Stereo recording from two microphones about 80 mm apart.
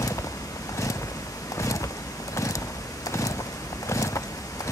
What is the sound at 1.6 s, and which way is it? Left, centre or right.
Vehicle, left.